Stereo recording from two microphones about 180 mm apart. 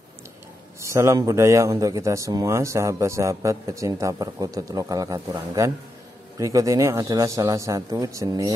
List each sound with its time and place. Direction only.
0.7 s a man's voice: 15° right (ahead or behind)